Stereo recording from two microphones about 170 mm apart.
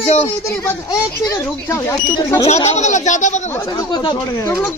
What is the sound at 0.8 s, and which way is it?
Speech, 20° left (ahead or behind).